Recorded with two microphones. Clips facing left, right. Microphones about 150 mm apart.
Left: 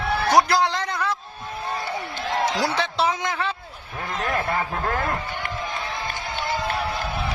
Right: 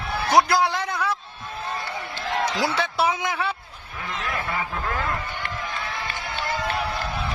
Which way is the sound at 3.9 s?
45° left (ahead or behind).